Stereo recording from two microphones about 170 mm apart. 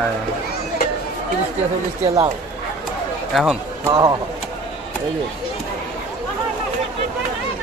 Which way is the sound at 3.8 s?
20° right (ahead or behind).